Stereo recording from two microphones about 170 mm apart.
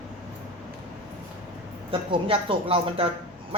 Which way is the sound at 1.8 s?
30° right (ahead or behind).